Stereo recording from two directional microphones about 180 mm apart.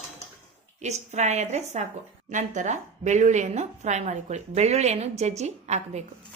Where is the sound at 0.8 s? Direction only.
40° right (ahead or behind).